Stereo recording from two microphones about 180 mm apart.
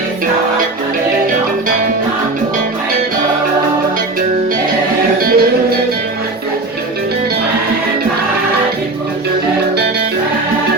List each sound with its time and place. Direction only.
5.2 s music: 55° right (ahead or behind)